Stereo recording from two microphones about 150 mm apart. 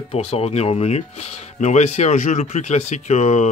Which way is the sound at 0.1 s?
45° left (ahead or behind).